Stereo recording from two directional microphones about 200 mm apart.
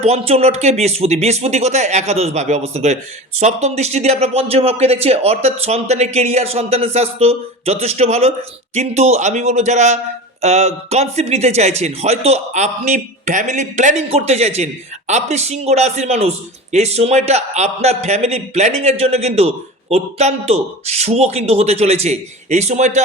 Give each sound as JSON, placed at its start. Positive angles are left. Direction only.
{"t": 0.0, "sound": "a man's voice", "side_deg": -30}